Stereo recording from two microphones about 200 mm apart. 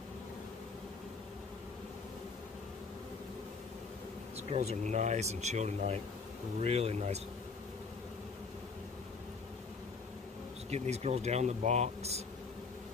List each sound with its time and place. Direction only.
4.4 s speech: 30° right (ahead or behind)
10.7 s speech: 35° right (ahead or behind)